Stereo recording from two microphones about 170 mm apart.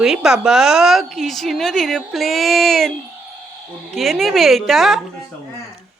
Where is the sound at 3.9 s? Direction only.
Centre (ahead or behind).